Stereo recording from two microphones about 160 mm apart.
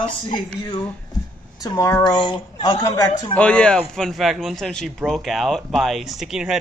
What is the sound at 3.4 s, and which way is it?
A man's voice, 5° left (ahead or behind).